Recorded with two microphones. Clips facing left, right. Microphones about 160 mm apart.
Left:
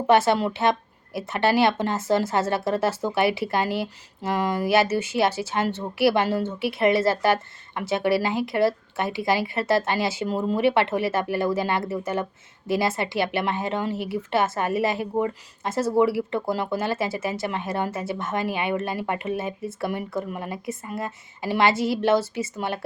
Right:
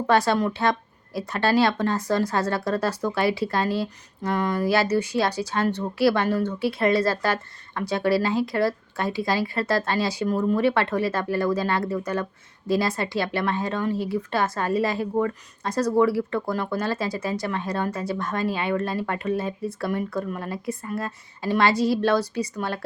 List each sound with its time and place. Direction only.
0.1 s speech: 25° left (ahead or behind)
13.9 s speech: 65° left (ahead or behind)
14.2 s speech: 25° left (ahead or behind)